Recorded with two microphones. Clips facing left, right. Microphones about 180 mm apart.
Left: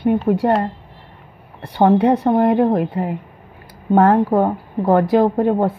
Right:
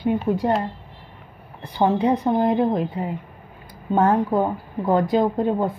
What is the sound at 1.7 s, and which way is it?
A woman's voice, 65° left (ahead or behind).